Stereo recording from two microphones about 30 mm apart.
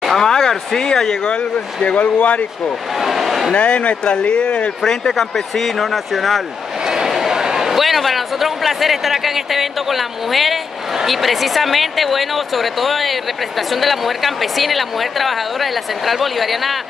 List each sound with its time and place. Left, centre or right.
0.1 s speech: centre
1.3 s speech: left
3.0 s speech: centre
3.5 s speech: left
4.0 s speech: left
5.0 s speech: centre
6.9 s a sound: centre
7.8 s a woman's voice: centre